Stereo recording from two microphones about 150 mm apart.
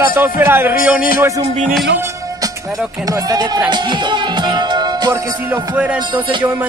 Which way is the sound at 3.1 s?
25° right (ahead or behind).